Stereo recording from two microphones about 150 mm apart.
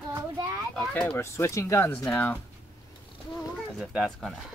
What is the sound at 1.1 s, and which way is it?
Speech, 20° left (ahead or behind).